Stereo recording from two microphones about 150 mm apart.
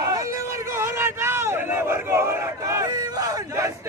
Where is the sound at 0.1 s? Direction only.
20° right (ahead or behind).